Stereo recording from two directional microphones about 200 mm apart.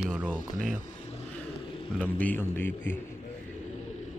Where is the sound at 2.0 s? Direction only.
10° left (ahead or behind).